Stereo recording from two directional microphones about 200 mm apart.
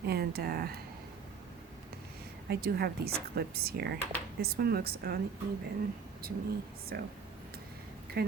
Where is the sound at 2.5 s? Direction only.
50° right (ahead or behind).